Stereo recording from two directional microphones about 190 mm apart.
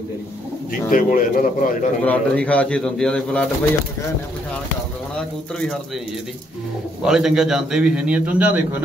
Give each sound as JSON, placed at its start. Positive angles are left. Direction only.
{"t": 0.8, "sound": "a man's voice", "side_deg": 45}
{"t": 2.0, "sound": "a man's voice", "side_deg": 5}
{"t": 7.1, "sound": "a man's voice", "side_deg": 0}